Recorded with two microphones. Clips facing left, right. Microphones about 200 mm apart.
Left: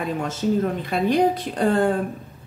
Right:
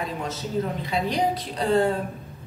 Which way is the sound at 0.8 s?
50° left (ahead or behind).